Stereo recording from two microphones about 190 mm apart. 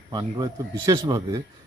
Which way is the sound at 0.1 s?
20° right (ahead or behind).